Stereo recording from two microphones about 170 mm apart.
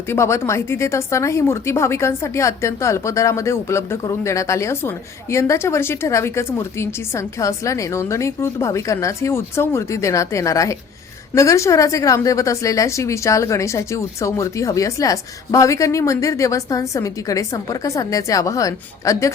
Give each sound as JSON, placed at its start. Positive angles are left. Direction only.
{"t": 0.1, "sound": "a woman's voice", "side_deg": 15}